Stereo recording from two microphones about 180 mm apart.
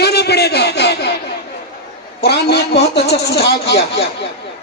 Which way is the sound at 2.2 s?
65° left (ahead or behind).